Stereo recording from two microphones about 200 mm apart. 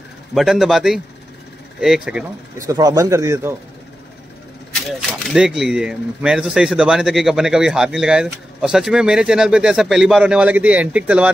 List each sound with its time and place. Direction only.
0.3 s speech: centre (ahead or behind)
2.6 s speech: 15° right (ahead or behind)
5.0 s speech: 5° right (ahead or behind)